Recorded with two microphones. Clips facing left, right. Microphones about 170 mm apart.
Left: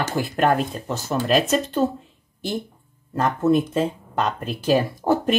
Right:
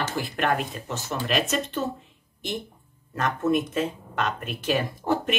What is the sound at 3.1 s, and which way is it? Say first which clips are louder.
Speech: left 5 dB; 30° left (ahead or behind).